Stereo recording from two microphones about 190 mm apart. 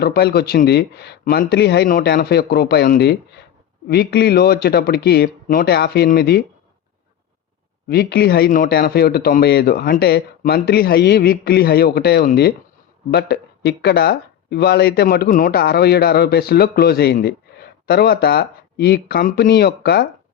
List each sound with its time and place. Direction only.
0.0 s speech: 55° left (ahead or behind)
7.9 s speech: 55° left (ahead or behind)